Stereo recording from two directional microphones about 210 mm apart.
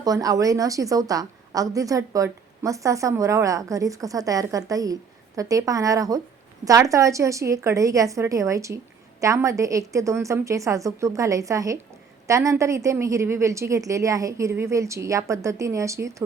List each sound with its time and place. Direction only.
0.0 s a woman's voice: 15° right (ahead or behind)